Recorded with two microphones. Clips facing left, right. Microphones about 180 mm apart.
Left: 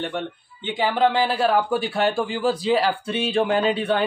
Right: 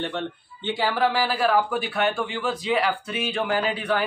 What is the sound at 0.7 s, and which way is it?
Speech, 20° left (ahead or behind).